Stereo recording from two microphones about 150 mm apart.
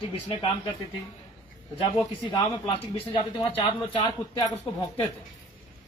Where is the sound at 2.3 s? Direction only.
35° left (ahead or behind).